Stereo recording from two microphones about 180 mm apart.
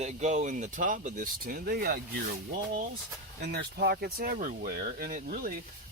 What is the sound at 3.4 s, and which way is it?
Speech, 65° right (ahead or behind).